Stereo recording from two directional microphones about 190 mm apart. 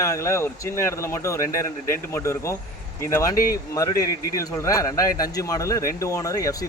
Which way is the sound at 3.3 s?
50° left (ahead or behind).